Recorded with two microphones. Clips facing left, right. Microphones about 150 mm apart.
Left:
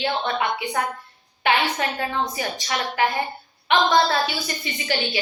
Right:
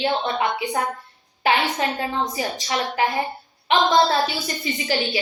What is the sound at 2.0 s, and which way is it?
A woman's voice, 30° right (ahead or behind).